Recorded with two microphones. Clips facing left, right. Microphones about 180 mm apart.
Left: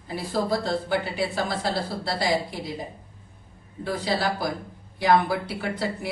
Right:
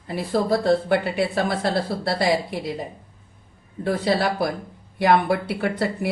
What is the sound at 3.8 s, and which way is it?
A woman's voice, 60° right (ahead or behind).